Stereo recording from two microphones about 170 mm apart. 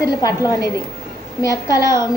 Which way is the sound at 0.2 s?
20° left (ahead or behind).